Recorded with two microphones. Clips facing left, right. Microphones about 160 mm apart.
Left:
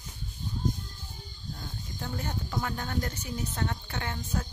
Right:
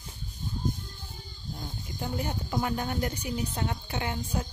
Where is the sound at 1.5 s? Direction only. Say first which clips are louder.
Right 3 dB; 15° right (ahead or behind).